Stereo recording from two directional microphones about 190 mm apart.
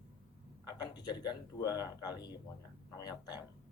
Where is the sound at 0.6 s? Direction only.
20° left (ahead or behind).